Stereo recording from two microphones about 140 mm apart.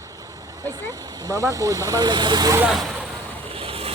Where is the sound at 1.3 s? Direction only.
25° right (ahead or behind).